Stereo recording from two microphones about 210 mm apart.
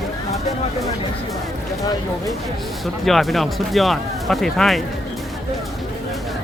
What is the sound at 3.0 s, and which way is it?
Speech, centre (ahead or behind).